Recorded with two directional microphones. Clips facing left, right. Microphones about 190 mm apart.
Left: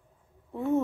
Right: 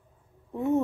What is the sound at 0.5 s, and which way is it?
Speech, 20° right (ahead or behind).